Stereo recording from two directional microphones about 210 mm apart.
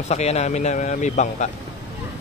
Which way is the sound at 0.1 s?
30° left (ahead or behind).